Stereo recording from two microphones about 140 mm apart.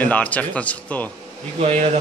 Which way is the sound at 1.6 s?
50° right (ahead or behind).